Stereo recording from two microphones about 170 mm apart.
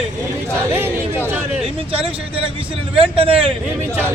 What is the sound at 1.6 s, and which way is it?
A man's voice, 35° right (ahead or behind).